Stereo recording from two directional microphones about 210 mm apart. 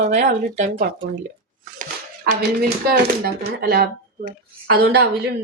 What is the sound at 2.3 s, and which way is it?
Speech, 50° right (ahead or behind).